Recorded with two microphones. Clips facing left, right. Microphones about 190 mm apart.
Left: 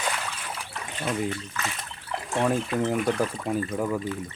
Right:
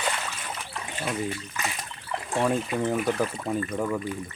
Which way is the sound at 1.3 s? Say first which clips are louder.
Left 1 dB; 15° right (ahead or behind).